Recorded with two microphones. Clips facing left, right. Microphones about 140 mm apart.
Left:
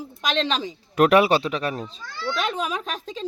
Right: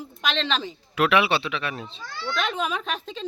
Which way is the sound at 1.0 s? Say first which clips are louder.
Left 5 dB; 45° left (ahead or behind).